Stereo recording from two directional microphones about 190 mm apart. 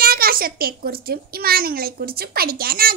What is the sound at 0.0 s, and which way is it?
A child's voice, 50° right (ahead or behind).